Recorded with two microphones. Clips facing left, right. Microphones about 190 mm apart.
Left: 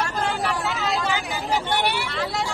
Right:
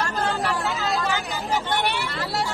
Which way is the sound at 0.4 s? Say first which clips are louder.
Even; centre (ahead or behind).